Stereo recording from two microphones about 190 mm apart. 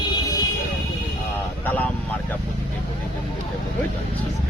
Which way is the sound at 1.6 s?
10° left (ahead or behind).